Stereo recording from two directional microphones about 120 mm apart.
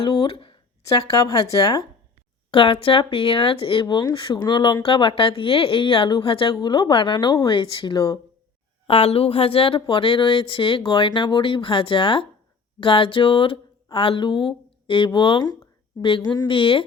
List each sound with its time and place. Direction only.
0.0 s speech: 45° left (ahead or behind)
2.5 s speech: 45° left (ahead or behind)
8.9 s speech: 55° left (ahead or behind)